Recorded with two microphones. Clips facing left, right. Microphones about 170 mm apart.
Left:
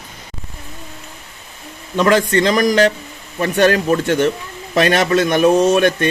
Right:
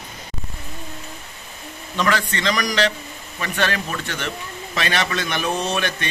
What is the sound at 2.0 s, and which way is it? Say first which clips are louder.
A man's voice: left 8 dB; 45° left (ahead or behind).